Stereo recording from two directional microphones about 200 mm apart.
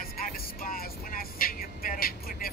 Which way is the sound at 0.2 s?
45° left (ahead or behind).